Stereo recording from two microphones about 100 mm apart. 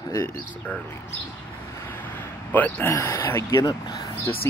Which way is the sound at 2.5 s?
20° left (ahead or behind).